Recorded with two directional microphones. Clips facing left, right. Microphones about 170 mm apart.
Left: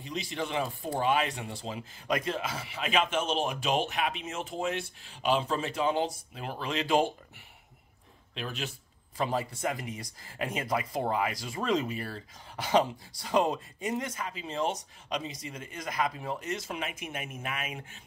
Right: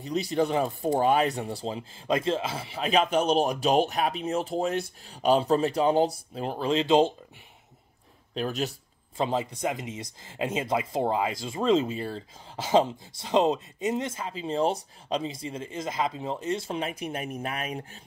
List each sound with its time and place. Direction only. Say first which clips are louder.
0.0 s speech: right 9 dB; 40° right (ahead or behind); by 7.2 s 20° right (ahead or behind)
8.4 s speech: right 8 dB; 40° right (ahead or behind)
9.1 s speech: right 3 dB; 25° right (ahead or behind)